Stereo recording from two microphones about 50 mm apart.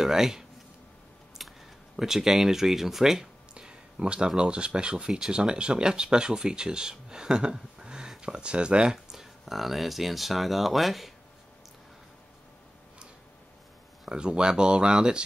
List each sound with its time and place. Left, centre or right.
0.0 s speech: centre
1.4 s a sound: centre
2.0 s speech: centre
8.9 s speech: centre
14.0 s speech: centre